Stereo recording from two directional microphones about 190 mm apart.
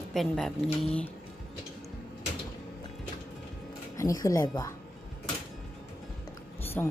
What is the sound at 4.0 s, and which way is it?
Speech, 15° left (ahead or behind).